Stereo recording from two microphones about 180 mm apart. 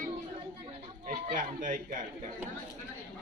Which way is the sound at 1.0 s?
45° right (ahead or behind).